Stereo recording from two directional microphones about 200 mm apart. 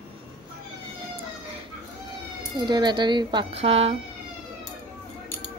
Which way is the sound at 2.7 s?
20° right (ahead or behind).